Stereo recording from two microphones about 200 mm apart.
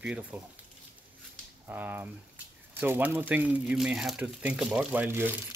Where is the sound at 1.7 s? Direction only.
10° right (ahead or behind).